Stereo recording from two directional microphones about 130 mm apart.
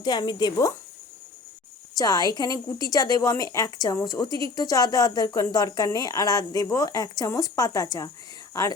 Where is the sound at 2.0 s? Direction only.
30° left (ahead or behind).